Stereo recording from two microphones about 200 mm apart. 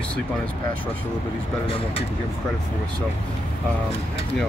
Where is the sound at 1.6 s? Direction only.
30° left (ahead or behind).